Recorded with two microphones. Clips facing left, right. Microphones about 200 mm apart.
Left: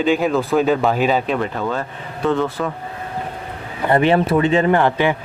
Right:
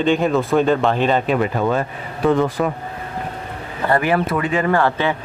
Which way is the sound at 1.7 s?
15° right (ahead or behind).